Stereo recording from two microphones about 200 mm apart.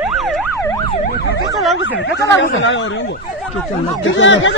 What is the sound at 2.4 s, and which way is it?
Speech, 70° left (ahead or behind).